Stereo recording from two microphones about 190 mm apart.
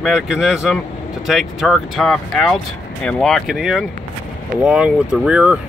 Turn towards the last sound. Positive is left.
turn(degrees=-5)  # may be behind; listen again after turning